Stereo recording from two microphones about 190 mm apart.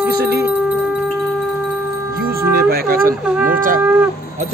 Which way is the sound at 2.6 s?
50° right (ahead or behind).